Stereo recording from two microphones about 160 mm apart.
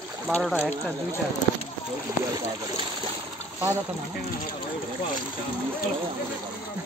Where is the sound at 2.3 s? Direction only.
25° right (ahead or behind).